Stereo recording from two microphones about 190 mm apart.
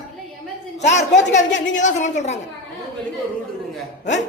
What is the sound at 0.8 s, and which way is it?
A man's voice, 35° left (ahead or behind).